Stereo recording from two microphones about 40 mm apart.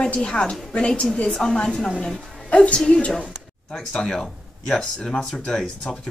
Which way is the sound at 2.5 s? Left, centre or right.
Left.